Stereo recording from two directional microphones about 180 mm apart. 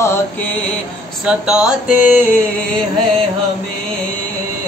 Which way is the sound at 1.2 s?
5° right (ahead or behind).